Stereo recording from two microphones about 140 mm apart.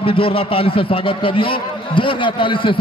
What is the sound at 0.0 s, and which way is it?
A man's voice, 40° left (ahead or behind).